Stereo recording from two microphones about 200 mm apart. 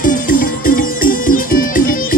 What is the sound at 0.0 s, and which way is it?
Music, 45° left (ahead or behind).